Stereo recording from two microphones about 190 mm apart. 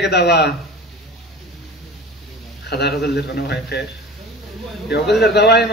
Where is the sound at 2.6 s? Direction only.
60° left (ahead or behind).